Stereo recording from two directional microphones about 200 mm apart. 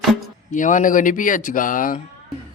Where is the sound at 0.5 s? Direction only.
40° left (ahead or behind).